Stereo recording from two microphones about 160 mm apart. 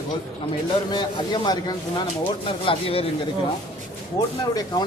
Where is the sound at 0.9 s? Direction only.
25° left (ahead or behind).